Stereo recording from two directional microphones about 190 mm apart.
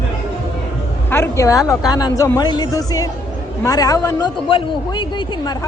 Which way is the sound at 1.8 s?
20° left (ahead or behind).